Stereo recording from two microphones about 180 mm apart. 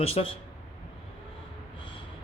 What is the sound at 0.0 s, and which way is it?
Speech, 30° left (ahead or behind).